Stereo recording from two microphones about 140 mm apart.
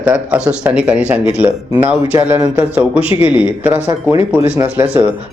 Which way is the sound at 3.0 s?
40° left (ahead or behind).